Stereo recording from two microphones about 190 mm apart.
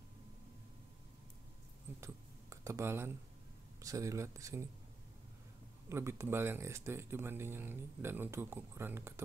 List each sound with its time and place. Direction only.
2.0 s a sound: 15° right (ahead or behind)
3.8 s speech: 15° right (ahead or behind)
5.9 s speech: 15° right (ahead or behind)